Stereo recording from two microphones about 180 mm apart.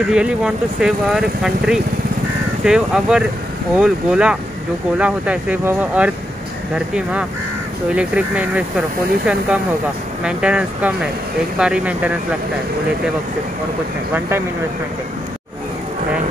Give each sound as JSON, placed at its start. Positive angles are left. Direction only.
{"t": 0.1, "sound": "speech", "side_deg": -5}